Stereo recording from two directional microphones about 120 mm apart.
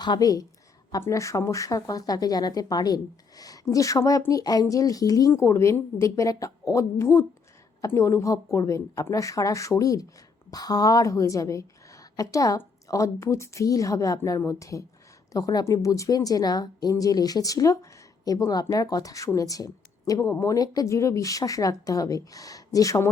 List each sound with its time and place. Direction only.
0.0 s a woman's voice: 35° left (ahead or behind)